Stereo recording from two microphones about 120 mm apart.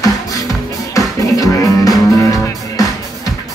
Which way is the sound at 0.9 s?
30° left (ahead or behind).